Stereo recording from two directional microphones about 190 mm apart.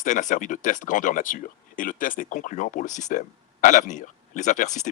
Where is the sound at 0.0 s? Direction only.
40° left (ahead or behind).